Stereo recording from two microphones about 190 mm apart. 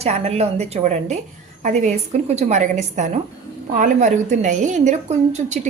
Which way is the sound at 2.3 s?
35° right (ahead or behind).